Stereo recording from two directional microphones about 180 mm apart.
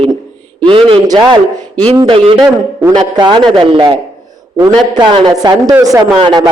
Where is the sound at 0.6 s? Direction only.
30° right (ahead or behind).